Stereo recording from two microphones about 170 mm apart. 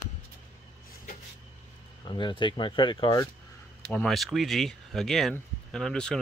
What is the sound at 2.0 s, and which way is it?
Speech, 30° left (ahead or behind).